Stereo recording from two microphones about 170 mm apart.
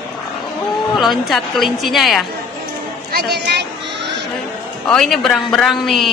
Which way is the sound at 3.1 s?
70° right (ahead or behind).